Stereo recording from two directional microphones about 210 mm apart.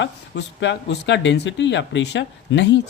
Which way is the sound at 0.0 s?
60° left (ahead or behind).